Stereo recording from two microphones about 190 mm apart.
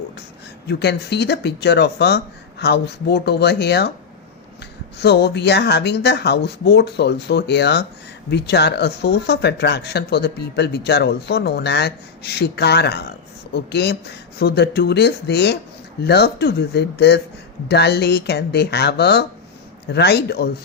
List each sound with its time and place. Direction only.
0.7 s speech: 60° left (ahead or behind)
4.9 s speech: 60° left (ahead or behind)